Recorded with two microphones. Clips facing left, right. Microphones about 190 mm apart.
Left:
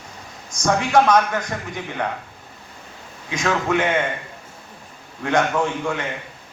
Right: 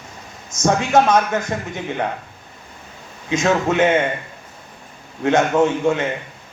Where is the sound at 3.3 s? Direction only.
25° right (ahead or behind).